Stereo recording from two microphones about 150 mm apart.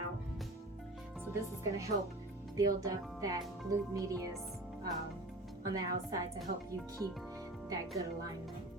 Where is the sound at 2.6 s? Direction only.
25° right (ahead or behind).